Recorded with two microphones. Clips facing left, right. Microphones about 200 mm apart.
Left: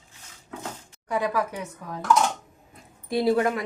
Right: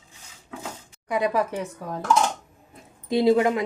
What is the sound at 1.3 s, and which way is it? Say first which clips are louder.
Speech: right 3 dB; 25° right (ahead or behind).